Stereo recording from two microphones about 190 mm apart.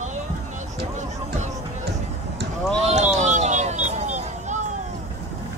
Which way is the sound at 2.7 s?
35° right (ahead or behind).